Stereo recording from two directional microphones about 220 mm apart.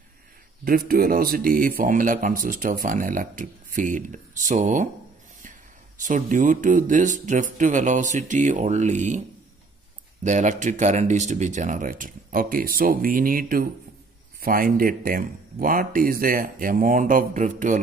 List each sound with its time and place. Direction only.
0.7 s a man's voice: 40° right (ahead or behind)
10.2 s a man's voice: 35° right (ahead or behind)